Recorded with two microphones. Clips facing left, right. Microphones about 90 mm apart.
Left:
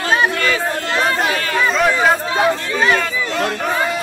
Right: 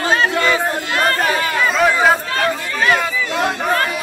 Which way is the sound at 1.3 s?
15° right (ahead or behind).